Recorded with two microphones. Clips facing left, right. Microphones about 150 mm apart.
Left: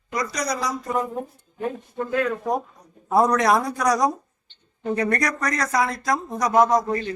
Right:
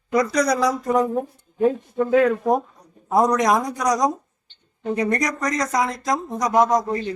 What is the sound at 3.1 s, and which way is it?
A man's voice, 20° right (ahead or behind).